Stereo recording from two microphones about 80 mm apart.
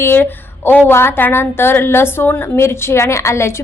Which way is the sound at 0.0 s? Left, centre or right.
Left.